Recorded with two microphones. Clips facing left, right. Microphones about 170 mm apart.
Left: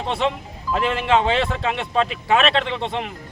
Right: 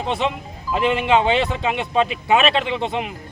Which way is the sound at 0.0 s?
Centre (ahead or behind).